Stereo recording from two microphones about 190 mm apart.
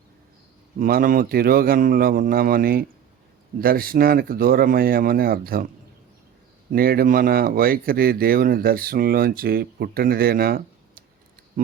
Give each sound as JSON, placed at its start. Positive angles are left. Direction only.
{"t": 0.8, "sound": "speech", "side_deg": -50}
{"t": 6.7, "sound": "speech", "side_deg": -50}